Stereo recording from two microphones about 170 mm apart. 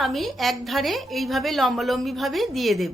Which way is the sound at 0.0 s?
Centre (ahead or behind).